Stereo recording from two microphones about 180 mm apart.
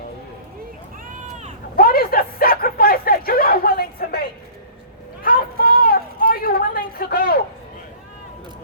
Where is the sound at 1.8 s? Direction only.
55° left (ahead or behind).